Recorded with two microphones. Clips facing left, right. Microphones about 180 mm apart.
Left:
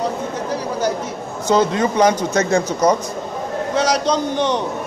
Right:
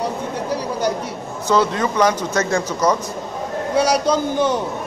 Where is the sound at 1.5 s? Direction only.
20° left (ahead or behind).